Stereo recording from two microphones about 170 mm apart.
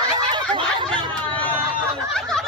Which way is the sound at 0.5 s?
30° right (ahead or behind).